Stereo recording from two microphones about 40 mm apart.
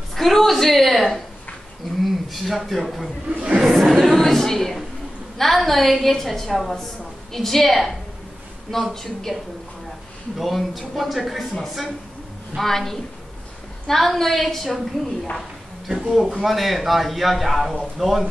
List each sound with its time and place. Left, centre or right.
0.1 s a woman's voice: centre
3.3 s speech: right
3.6 s a woman's voice: centre
8.9 s a woman's voice: centre
10.3 s a man's voice: centre
12.5 s a woman's voice: centre
16.1 s a man's voice: centre